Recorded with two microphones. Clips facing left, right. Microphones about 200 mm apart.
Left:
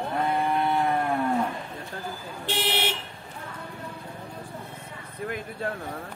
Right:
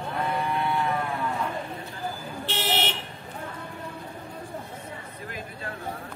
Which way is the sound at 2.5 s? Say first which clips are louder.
Left 1 dB; 10° left (ahead or behind).